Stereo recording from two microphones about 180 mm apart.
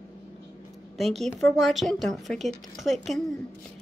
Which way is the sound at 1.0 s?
Centre (ahead or behind).